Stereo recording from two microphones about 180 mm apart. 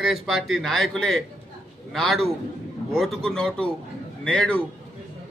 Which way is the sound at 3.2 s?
5° left (ahead or behind).